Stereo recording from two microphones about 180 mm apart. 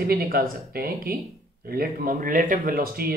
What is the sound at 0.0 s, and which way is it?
Speech, 55° right (ahead or behind).